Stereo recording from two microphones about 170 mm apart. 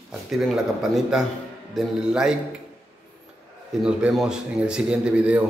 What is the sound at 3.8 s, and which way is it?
Speech, 5° right (ahead or behind).